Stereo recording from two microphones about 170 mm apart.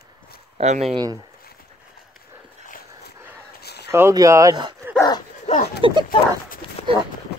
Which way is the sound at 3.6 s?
75° left (ahead or behind).